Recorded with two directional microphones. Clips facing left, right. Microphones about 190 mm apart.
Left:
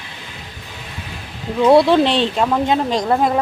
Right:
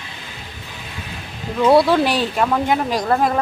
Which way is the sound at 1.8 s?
25° left (ahead or behind).